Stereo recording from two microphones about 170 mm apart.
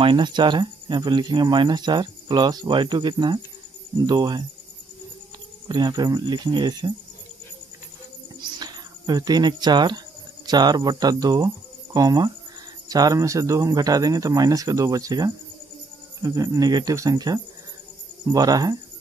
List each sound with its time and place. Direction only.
0.0 s speech: 30° right (ahead or behind)
5.7 s speech: 25° right (ahead or behind)
8.4 s a sound: 25° right (ahead or behind)
10.4 s speech: 25° right (ahead or behind)